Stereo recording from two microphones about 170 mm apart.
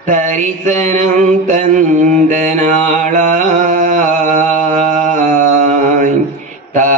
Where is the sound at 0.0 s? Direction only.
45° right (ahead or behind).